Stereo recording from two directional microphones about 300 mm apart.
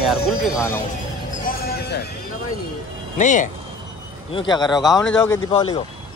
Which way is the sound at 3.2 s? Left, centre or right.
Left.